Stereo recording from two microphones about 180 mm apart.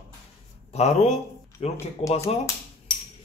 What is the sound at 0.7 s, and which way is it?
Speech, 35° left (ahead or behind).